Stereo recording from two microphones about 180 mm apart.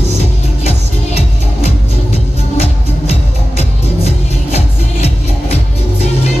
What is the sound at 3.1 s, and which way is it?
Music, 35° left (ahead or behind).